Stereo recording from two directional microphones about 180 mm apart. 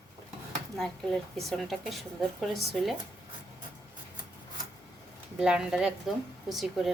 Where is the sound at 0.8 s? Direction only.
Centre (ahead or behind).